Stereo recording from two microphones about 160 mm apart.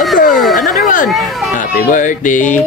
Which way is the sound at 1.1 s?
Centre (ahead or behind).